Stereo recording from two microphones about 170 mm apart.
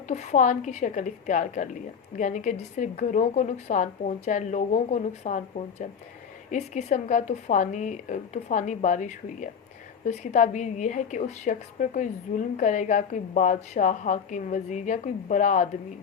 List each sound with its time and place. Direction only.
0.1 s a woman's voice: 45° left (ahead or behind)